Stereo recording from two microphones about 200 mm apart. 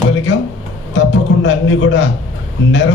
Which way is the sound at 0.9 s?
65° left (ahead or behind).